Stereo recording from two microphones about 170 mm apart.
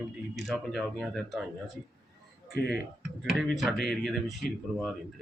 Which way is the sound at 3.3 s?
Centre (ahead or behind).